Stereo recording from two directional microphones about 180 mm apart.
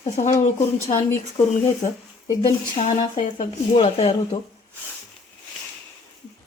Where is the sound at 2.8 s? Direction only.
35° left (ahead or behind).